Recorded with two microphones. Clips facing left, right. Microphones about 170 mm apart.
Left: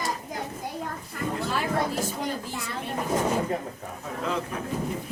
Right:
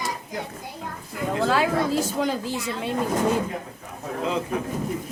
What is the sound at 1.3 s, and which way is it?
A woman's voice, 90° right.